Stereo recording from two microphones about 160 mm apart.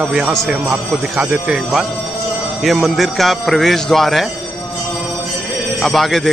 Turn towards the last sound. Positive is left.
turn(degrees=0)  # may be behind; listen again after turning